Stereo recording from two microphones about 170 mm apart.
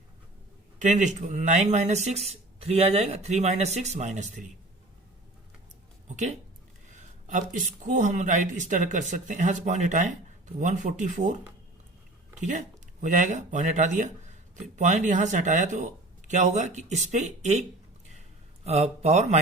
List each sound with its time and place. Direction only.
0.8 s speech: 45° right (ahead or behind)
6.1 s speech: 45° right (ahead or behind)
12.4 s speech: 45° right (ahead or behind)
18.6 s speech: 40° right (ahead or behind)